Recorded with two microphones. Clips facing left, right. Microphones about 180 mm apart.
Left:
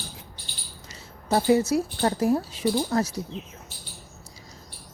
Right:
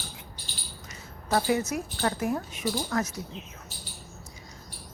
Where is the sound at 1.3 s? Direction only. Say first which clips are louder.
Left 5 dB; 30° left (ahead or behind).